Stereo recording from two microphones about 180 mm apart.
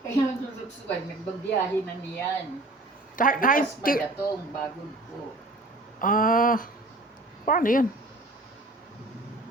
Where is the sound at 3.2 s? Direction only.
50° left (ahead or behind).